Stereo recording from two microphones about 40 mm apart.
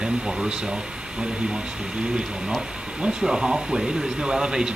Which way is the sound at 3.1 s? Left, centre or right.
Centre.